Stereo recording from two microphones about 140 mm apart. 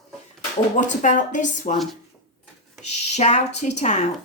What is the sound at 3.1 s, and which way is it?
Speech, 55° left (ahead or behind).